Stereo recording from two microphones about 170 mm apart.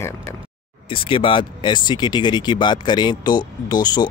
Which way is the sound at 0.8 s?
30° left (ahead or behind).